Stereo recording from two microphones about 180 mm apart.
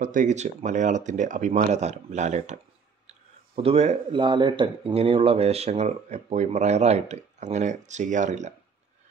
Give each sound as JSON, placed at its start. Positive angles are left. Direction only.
{"t": 0.0, "sound": "speech", "side_deg": -45}